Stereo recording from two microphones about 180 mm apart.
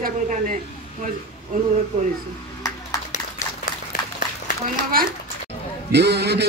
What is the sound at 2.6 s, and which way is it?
Clapping, 20° left (ahead or behind).